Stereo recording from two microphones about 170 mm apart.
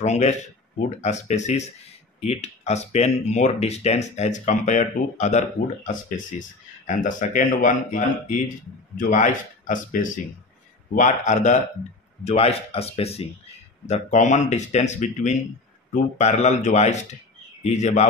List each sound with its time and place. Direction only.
0.0 s speech: 40° left (ahead or behind)